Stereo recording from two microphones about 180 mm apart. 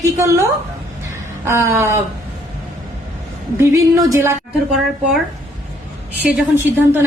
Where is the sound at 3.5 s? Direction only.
20° right (ahead or behind).